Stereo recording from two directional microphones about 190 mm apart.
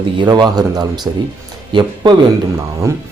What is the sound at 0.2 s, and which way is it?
Speech, 20° right (ahead or behind).